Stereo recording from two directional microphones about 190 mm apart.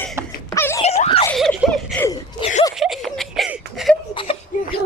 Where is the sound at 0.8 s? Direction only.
35° left (ahead or behind).